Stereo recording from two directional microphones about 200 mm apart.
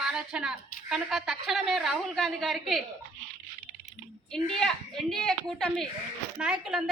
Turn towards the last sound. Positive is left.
turn(degrees=-5)  # may be behind; listen again after turning